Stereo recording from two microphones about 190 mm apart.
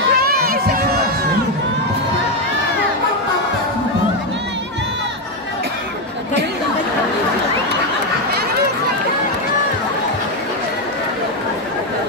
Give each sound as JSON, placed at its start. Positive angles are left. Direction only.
{"t": 0.1, "sound": "run", "side_deg": -55}